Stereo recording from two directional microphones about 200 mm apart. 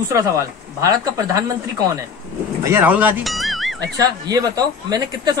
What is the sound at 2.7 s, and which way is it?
Speech, 10° right (ahead or behind).